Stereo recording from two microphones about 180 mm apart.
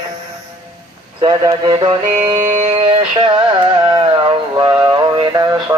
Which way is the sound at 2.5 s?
40° right (ahead or behind).